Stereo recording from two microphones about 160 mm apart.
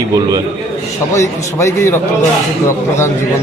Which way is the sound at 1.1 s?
20° left (ahead or behind).